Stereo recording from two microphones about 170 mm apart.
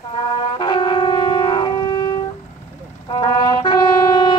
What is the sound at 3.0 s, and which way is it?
Music, 30° left (ahead or behind).